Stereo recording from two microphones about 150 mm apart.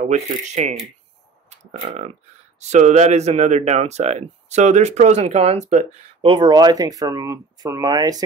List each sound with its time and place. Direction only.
0.6 s speech: 50° right (ahead or behind)
1.9 s speech: 45° right (ahead or behind)
6.2 s speech: 30° right (ahead or behind)